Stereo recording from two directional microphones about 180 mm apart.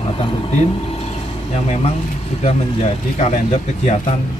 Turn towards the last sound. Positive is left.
turn(degrees=35)  # may be behind; listen again after turning